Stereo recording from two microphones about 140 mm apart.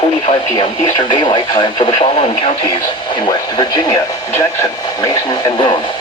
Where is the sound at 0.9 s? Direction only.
35° left (ahead or behind).